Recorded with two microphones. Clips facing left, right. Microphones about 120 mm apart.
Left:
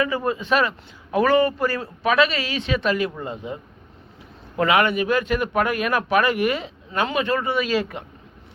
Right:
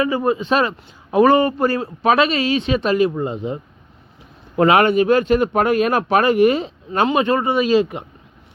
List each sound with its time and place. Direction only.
0.0 s a man's voice: 20° right (ahead or behind)
4.5 s a man's voice: 35° right (ahead or behind)